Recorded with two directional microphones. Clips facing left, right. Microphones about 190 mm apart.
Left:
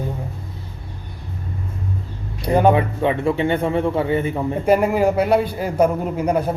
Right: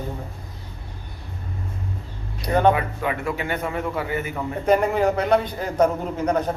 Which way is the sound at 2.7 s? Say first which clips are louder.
Left 6 dB; 25° left (ahead or behind).